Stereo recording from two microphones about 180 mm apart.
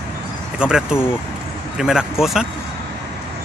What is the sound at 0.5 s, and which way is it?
Speech, 5° right (ahead or behind).